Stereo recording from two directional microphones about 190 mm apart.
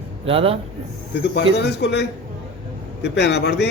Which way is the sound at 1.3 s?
60° left (ahead or behind).